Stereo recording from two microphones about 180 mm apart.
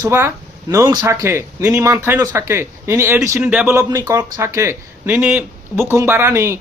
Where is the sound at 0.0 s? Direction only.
15° right (ahead or behind).